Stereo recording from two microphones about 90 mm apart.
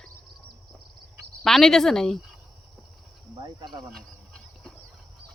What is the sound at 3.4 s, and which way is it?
Speech, 55° right (ahead or behind).